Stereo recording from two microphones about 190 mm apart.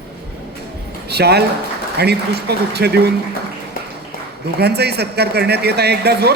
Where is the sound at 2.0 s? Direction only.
60° right (ahead or behind).